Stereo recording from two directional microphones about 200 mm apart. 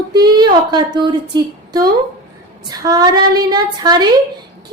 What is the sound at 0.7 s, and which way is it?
A woman's voice, 20° right (ahead or behind).